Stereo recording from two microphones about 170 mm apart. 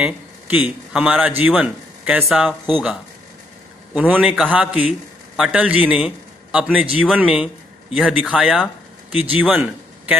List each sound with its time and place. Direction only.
0.0 s a man's voice: 10° right (ahead or behind)